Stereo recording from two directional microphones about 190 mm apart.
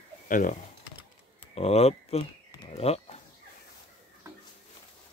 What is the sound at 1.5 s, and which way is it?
Speech, 35° left (ahead or behind).